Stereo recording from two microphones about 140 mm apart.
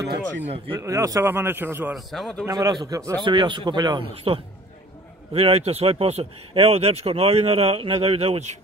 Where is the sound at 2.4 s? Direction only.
30° right (ahead or behind).